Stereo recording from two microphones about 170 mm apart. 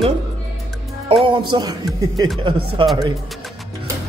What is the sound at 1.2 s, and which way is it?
A man's voice, 25° right (ahead or behind).